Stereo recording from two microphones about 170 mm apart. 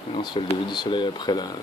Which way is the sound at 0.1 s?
30° left (ahead or behind).